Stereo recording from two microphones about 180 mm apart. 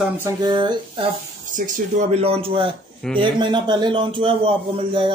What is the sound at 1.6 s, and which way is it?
A man's voice, 40° right (ahead or behind).